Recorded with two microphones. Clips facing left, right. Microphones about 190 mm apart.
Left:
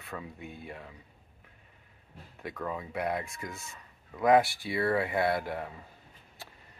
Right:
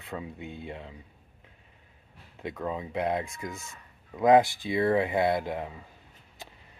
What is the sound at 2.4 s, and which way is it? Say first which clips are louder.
Speech: right 3 dB; 20° right (ahead or behind).